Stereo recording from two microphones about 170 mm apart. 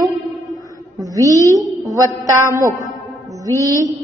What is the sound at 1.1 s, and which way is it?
A woman's voice, 20° right (ahead or behind).